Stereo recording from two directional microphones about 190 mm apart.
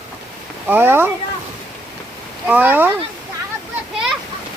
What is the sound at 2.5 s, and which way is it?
Speech, 10° right (ahead or behind).